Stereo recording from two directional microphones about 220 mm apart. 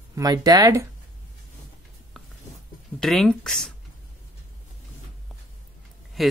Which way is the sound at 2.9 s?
Centre (ahead or behind).